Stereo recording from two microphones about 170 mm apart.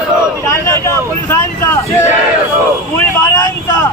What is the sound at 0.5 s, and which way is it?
Speech, 15° left (ahead or behind).